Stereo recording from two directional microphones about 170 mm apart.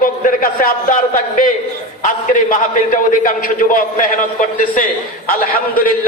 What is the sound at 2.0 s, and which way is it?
A man's voice, 50° left (ahead or behind).